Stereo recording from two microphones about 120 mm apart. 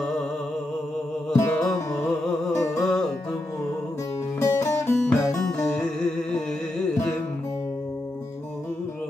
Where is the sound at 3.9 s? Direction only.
30° left (ahead or behind).